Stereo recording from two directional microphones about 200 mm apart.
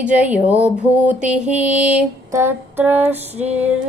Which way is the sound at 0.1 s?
10° right (ahead or behind).